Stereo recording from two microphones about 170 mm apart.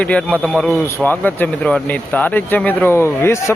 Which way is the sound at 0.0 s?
5° left (ahead or behind).